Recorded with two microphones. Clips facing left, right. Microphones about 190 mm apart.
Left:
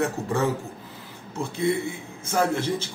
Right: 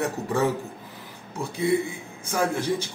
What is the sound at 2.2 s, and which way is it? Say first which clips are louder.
Speech: left 2 dB; 15° right (ahead or behind).